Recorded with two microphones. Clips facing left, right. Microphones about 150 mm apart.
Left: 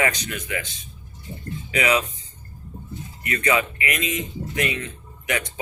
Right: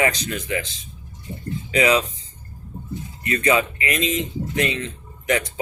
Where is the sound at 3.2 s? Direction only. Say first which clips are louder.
Right 3 dB; 30° right (ahead or behind).